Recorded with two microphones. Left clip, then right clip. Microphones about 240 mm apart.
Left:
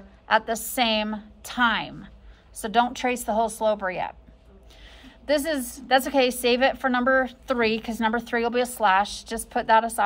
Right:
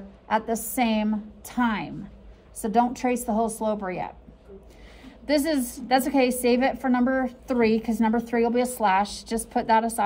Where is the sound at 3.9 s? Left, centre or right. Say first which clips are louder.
Left 3 dB; left.